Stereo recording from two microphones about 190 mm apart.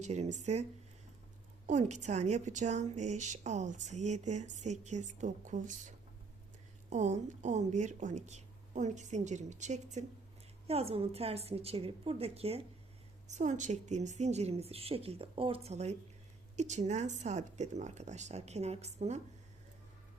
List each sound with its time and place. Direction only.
0.0 s speech: 35° right (ahead or behind)
1.6 s speech: 40° right (ahead or behind)
6.9 s speech: 40° right (ahead or behind)